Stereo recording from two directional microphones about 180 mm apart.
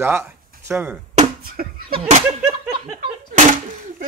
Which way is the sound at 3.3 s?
45° right (ahead or behind).